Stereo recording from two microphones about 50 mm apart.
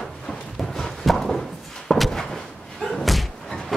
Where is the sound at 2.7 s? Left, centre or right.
Centre.